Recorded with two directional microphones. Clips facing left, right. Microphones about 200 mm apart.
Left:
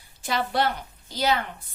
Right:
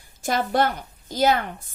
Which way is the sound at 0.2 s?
45° right (ahead or behind).